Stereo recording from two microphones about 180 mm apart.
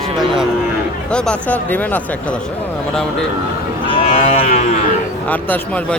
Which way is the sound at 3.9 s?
35° left (ahead or behind).